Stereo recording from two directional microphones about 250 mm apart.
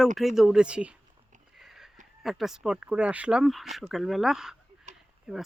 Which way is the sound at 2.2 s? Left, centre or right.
Centre.